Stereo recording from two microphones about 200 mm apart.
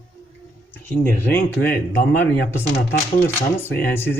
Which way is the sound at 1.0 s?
10° left (ahead or behind).